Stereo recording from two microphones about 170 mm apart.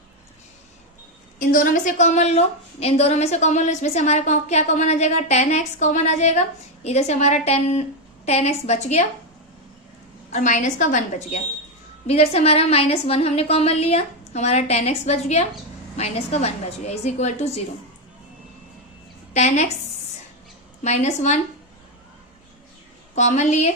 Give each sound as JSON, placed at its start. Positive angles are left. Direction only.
{"t": 1.4, "sound": "a woman's voice", "side_deg": 55}
{"t": 10.3, "sound": "a woman's voice", "side_deg": 45}
{"t": 19.3, "sound": "a woman's voice", "side_deg": 40}
{"t": 20.8, "sound": "a woman's voice", "side_deg": 40}
{"t": 23.1, "sound": "a woman's voice", "side_deg": 45}